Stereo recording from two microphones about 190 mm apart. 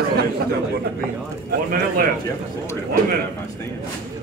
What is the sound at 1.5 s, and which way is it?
Speech, 50° right (ahead or behind).